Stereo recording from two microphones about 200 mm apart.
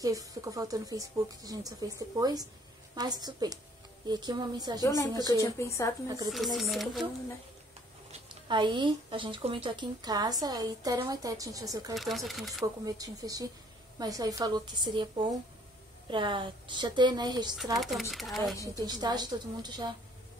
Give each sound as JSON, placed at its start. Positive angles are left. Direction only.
{"t": 0.0, "sound": "speech", "side_deg": -15}
{"t": 4.8, "sound": "speech", "side_deg": 15}
{"t": 6.3, "sound": "speech", "side_deg": 0}
{"t": 8.1, "sound": "speech", "side_deg": -25}
{"t": 11.9, "sound": "speech", "side_deg": 0}
{"t": 12.8, "sound": "speech", "side_deg": -20}
{"t": 17.7, "sound": "speech", "side_deg": 0}
{"t": 18.9, "sound": "speech", "side_deg": -20}